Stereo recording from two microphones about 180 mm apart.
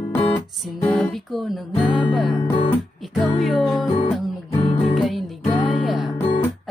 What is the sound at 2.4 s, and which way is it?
Music, 30° left (ahead or behind).